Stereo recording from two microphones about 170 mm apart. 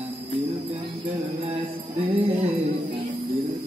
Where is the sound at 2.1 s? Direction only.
35° right (ahead or behind).